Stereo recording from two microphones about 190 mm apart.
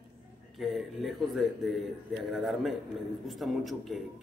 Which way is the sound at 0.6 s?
Centre (ahead or behind).